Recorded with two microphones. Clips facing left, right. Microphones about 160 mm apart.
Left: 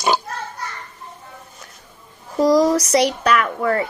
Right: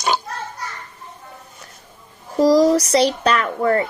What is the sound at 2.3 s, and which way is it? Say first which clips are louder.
Speech: right 1 dB; 30° right (ahead or behind).